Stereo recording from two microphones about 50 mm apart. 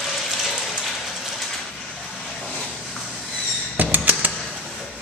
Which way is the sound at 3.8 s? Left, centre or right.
Right.